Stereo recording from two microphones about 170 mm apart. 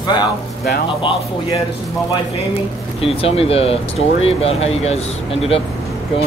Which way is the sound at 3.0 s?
35° left (ahead or behind).